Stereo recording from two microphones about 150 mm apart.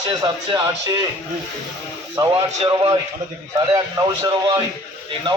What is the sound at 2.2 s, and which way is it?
A man's voice, 30° right (ahead or behind).